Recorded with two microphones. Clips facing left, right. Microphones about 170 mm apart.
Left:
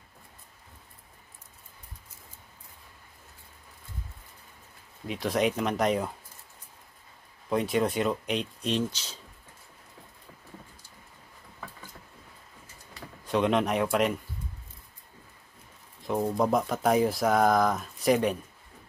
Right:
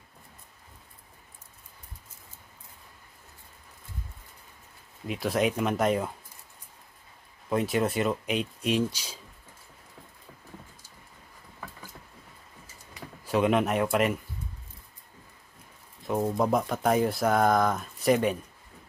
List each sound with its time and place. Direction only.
5.0 s speech: centre (ahead or behind)
7.4 s speech: centre (ahead or behind)
13.2 s speech: 5° right (ahead or behind)
16.0 s speech: centre (ahead or behind)